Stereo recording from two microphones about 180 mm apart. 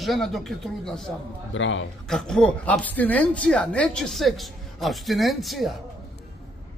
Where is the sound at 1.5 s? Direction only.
90° left.